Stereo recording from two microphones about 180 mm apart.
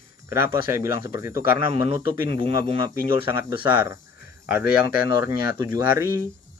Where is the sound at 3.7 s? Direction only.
10° right (ahead or behind).